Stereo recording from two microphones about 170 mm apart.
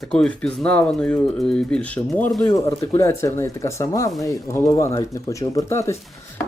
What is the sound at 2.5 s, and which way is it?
Speech, 20° left (ahead or behind).